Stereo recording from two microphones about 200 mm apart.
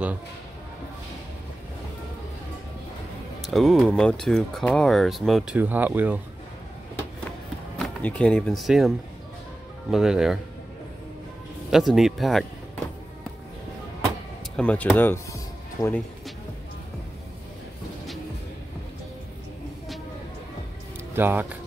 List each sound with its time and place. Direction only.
3.4 s speech: centre (ahead or behind)
7.8 s speech: 5° left (ahead or behind)
11.7 s speech: centre (ahead or behind)
14.6 s speech: 5° left (ahead or behind)
21.1 s speech: 10° right (ahead or behind)